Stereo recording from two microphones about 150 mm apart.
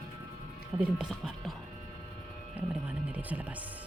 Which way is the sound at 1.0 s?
Centre (ahead or behind).